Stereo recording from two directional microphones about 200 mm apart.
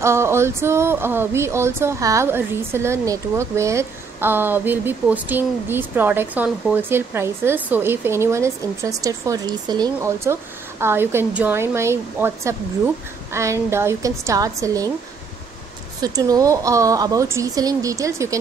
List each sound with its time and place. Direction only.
0.0 s speech: 15° right (ahead or behind)
16.0 s speech: 20° right (ahead or behind)